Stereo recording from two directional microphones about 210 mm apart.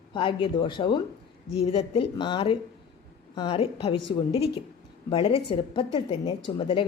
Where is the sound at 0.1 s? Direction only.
25° left (ahead or behind).